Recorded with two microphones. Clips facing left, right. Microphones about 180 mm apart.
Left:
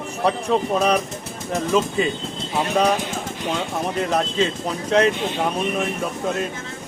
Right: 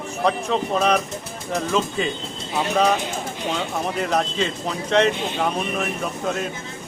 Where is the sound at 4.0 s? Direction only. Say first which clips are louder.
Left 2 dB; centre (ahead or behind).